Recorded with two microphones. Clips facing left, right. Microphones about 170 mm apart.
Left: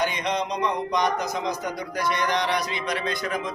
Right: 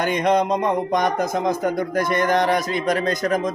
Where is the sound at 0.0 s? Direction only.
50° right (ahead or behind).